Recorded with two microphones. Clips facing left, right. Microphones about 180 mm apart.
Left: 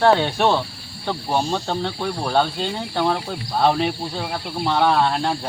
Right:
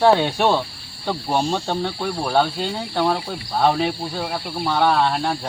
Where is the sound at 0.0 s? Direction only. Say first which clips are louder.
Right 1 dB; 10° right (ahead or behind).